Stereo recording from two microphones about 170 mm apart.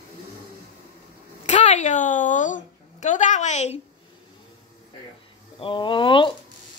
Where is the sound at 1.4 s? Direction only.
40° left (ahead or behind).